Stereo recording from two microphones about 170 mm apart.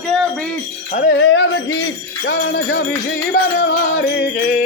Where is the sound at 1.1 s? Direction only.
90° left.